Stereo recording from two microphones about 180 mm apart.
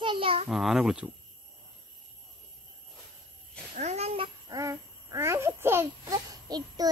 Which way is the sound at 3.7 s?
40° right (ahead or behind).